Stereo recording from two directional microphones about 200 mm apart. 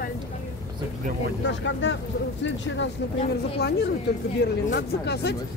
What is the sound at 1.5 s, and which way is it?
Speech, 70° left (ahead or behind).